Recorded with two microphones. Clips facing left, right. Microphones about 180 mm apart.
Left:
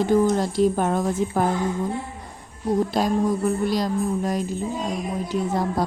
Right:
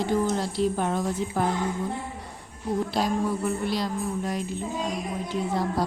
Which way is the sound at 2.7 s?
45° left (ahead or behind).